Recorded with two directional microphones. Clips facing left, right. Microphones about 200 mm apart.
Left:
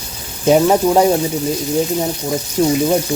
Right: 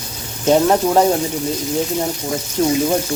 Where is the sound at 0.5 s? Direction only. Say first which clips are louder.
Left 2 dB; 5° left (ahead or behind).